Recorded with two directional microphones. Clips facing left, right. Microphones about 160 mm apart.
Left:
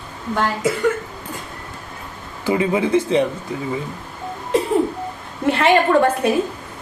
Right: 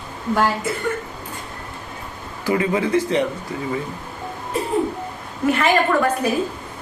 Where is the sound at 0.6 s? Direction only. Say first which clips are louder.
Left 5 dB; 90° left.